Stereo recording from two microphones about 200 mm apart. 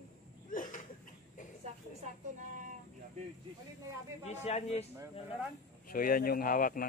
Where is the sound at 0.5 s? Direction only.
40° left (ahead or behind).